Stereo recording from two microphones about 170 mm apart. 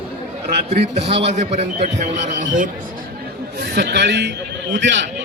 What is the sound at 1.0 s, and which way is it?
Speech, 90° right.